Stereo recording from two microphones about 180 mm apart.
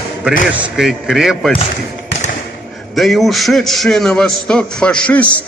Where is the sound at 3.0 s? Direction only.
Centre (ahead or behind).